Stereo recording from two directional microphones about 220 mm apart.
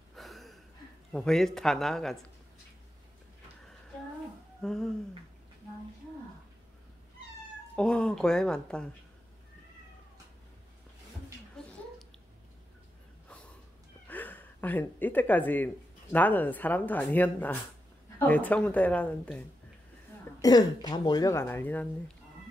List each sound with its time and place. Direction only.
0.1 s a sound: centre (ahead or behind)
1.1 s speech: centre (ahead or behind)
4.6 s speech: centre (ahead or behind)
7.7 s speech: 5° left (ahead or behind)
11.6 s a sound: 5° left (ahead or behind)
14.0 s speech: 10° left (ahead or behind)
20.4 s speech: 20° left (ahead or behind)